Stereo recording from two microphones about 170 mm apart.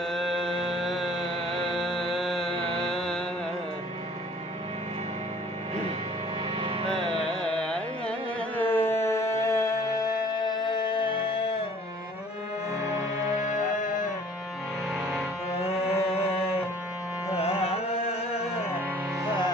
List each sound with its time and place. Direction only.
0.1 s music: centre (ahead or behind)
2.5 s music: 35° left (ahead or behind)
2.7 s music: centre (ahead or behind)
6.6 s music: 30° right (ahead or behind)
7.4 s carnatic music: 5° left (ahead or behind)
8.9 s music: 15° left (ahead or behind); by 11.6 s 30° left (ahead or behind)
13.4 s music: 50° left (ahead or behind)
15.7 s music: 35° left (ahead or behind)
17.3 s carnatic music: 35° left (ahead or behind)